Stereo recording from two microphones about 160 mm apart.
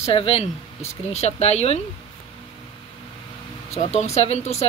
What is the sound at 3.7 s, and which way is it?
Speech, 45° left (ahead or behind).